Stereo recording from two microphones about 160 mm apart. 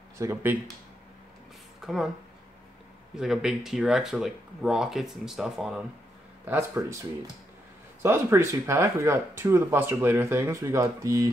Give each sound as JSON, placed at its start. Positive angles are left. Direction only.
{"t": 0.2, "sound": "speech", "side_deg": -15}
{"t": 1.8, "sound": "a woman's voice", "side_deg": 0}
{"t": 3.2, "sound": "speech", "side_deg": -5}
{"t": 6.4, "sound": "speech", "side_deg": -15}
{"t": 8.0, "sound": "speech", "side_deg": -15}